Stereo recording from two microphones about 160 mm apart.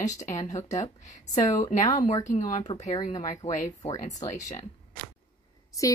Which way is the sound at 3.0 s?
50° left (ahead or behind).